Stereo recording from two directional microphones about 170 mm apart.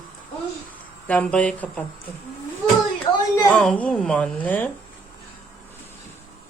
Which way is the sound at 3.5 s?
5° left (ahead or behind).